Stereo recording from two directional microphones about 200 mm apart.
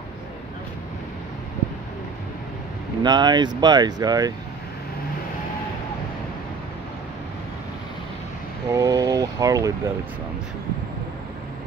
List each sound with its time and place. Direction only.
3.0 s speech: 20° right (ahead or behind)
8.6 s speech: 15° right (ahead or behind)